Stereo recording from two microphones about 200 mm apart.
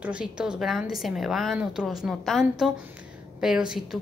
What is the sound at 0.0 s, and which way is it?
A woman's voice, 5° right (ahead or behind).